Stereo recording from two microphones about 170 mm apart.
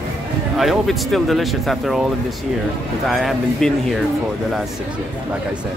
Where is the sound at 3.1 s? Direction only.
Centre (ahead or behind).